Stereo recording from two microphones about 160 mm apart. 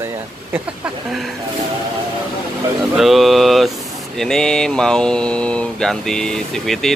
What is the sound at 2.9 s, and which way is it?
Speech, centre (ahead or behind).